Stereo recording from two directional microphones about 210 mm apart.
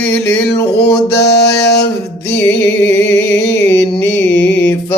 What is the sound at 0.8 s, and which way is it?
Music, 50° left (ahead or behind).